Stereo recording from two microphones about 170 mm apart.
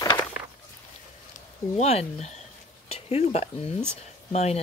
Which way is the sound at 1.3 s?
40° left (ahead or behind).